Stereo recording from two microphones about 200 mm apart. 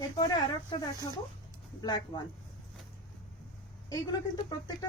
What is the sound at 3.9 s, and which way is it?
Speech, 20° left (ahead or behind).